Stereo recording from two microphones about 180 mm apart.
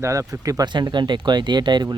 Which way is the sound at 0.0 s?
20° right (ahead or behind).